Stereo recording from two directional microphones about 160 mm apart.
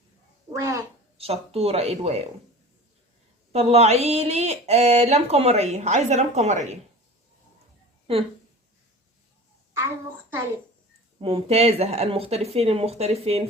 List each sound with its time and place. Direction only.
0.5 s a sound: 20° right (ahead or behind)
1.2 s speech: 40° right (ahead or behind)
3.5 s speech: 40° right (ahead or behind)
8.1 s speech: 35° right (ahead or behind)
11.2 s speech: 35° right (ahead or behind)